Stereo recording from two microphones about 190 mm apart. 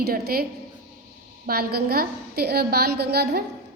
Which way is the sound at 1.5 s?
55° right (ahead or behind).